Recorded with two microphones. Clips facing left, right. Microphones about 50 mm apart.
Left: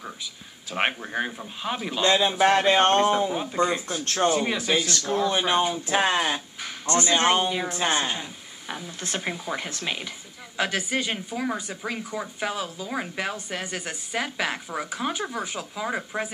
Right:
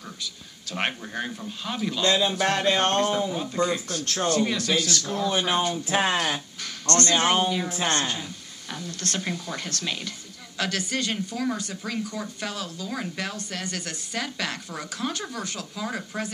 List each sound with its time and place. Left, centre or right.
0.2 s speech: centre